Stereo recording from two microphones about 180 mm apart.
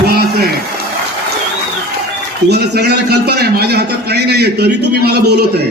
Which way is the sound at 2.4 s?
65° right (ahead or behind).